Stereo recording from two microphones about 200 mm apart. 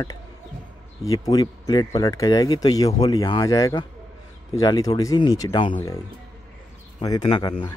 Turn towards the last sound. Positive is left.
turn(degrees=25)  # may be behind; listen again after turning